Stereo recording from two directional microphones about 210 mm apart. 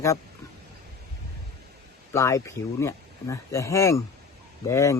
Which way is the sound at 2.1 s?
15° left (ahead or behind).